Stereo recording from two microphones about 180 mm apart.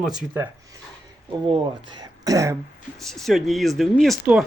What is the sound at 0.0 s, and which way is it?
Speech, 5° right (ahead or behind).